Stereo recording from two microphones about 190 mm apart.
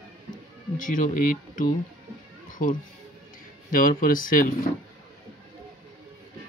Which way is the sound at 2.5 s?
45° left (ahead or behind).